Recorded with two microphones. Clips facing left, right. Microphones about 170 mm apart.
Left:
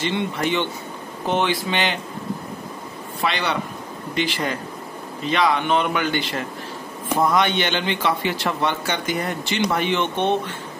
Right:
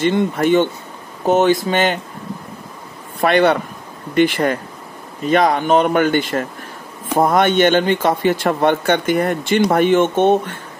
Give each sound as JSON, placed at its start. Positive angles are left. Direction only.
{"t": 0.0, "sound": "a man's voice", "side_deg": -45}
{"t": 3.2, "sound": "a man's voice", "side_deg": -50}